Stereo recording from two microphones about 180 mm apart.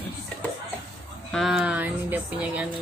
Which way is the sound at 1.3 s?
Centre (ahead or behind).